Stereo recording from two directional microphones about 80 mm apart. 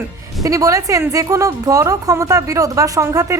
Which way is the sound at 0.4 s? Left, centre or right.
Right.